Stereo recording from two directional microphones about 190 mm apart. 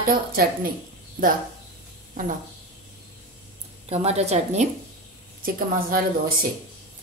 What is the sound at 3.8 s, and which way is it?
Speech, 35° right (ahead or behind).